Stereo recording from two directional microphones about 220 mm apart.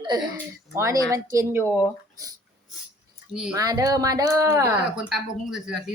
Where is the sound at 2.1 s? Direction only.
15° right (ahead or behind).